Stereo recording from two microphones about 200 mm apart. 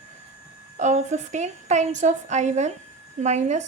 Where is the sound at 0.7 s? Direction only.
35° right (ahead or behind).